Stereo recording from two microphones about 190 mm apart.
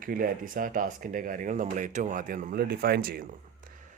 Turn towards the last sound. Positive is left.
turn(degrees=-50)  # may be behind; listen again after turning